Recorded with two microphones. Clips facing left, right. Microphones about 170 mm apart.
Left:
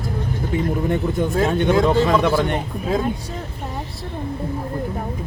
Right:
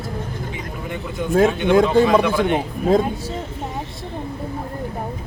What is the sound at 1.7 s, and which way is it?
Speech, 55° right (ahead or behind).